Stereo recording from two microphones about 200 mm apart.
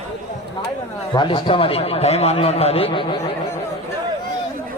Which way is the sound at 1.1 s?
25° left (ahead or behind).